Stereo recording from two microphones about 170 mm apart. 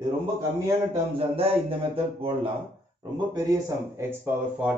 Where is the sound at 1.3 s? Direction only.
35° right (ahead or behind).